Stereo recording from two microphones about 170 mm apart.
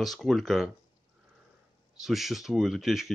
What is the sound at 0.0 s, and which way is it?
Speech, centre (ahead or behind).